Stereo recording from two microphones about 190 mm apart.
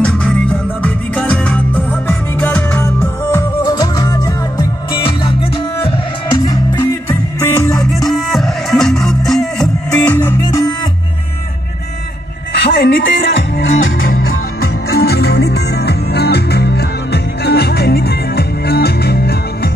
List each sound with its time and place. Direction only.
0.0 s music: 5° left (ahead or behind); by 5.9 s 25° left (ahead or behind)
6.4 s music: 15° left (ahead or behind)
7.9 s music: centre (ahead or behind)
12.5 s music: 60° left (ahead or behind); by 14.1 s 90° left
14.1 s music: 50° left (ahead or behind)